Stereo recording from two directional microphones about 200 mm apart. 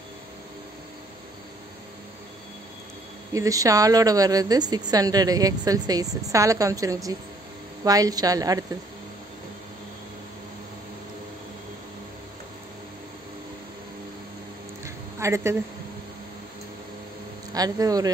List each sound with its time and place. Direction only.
3.3 s a woman's voice: 15° right (ahead or behind)
15.1 s a woman's voice: 15° right (ahead or behind)
17.5 s a man's voice: 20° right (ahead or behind)